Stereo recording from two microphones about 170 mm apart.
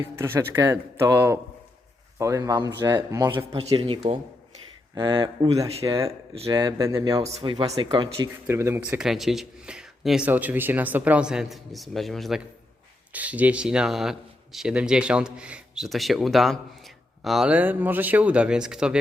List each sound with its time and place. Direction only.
0.0 s speech: 15° right (ahead or behind)
3.8 s speech: 35° right (ahead or behind)
8.4 s speech: 15° right (ahead or behind)